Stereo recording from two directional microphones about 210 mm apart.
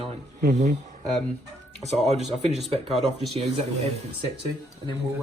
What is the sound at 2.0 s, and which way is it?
Speech, 30° right (ahead or behind).